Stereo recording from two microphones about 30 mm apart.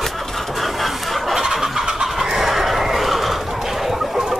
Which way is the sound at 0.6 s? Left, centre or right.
Centre.